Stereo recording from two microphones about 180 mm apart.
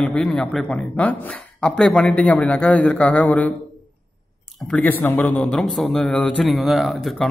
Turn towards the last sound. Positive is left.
turn(degrees=0)  # may be behind; listen again after turning